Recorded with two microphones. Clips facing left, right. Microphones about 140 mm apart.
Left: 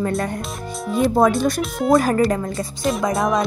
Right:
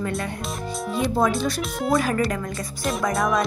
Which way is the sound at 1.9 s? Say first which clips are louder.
Left 6 dB; 40° left (ahead or behind).